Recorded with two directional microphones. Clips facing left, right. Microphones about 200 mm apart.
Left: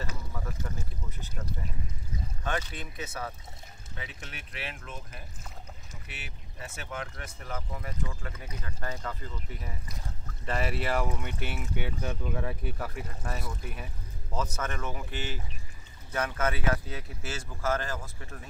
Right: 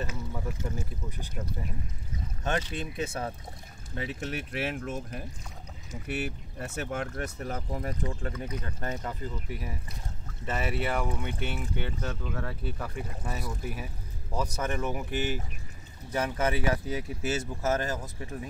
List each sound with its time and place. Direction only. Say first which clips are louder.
0.3 s speech: right 4 dB; 15° right (ahead or behind)
2.4 s speech: right 4 dB; 25° right (ahead or behind)
3.9 s speech: right 11 dB; 40° right (ahead or behind); by 9.1 s 25° right (ahead or behind)
10.4 s speech: even; centre (ahead or behind); by 18.5 s 20° right (ahead or behind)